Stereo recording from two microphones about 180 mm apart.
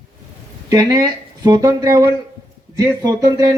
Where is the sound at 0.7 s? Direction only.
20° right (ahead or behind).